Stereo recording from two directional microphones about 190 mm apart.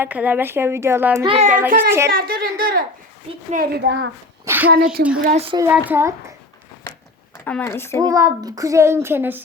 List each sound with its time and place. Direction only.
0.0 s speech: 10° right (ahead or behind)
1.2 s a child's voice: 30° right (ahead or behind)
1.5 s speech: 10° right (ahead or behind)
2.1 s a woman's voice: 50° right (ahead or behind); by 4.1 s 75° right (ahead or behind)
4.4 s speech: 10° right (ahead or behind)
5.0 s a woman's voice: 50° right (ahead or behind)
5.3 s a woman's voice: 30° right (ahead or behind)
5.5 s speech: 10° right (ahead or behind)
7.4 s speech: 10° left (ahead or behind)
7.9 s speech: 15° right (ahead or behind)